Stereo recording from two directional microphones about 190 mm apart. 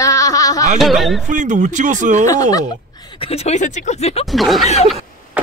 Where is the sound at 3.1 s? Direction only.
30° left (ahead or behind).